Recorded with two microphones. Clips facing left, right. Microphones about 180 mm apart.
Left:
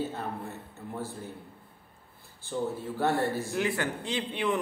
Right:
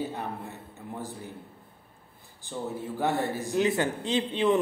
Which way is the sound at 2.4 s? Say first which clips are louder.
Left 2 dB; 15° right (ahead or behind).